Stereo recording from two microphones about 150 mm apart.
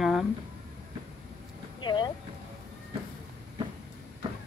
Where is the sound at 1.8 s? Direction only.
30° left (ahead or behind).